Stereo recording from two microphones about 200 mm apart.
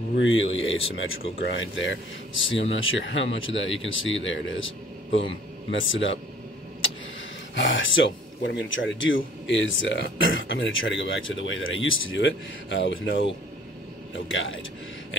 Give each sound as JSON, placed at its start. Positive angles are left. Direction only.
{"t": 0.1, "sound": "speech", "side_deg": 70}
{"t": 7.5, "sound": "speech", "side_deg": 70}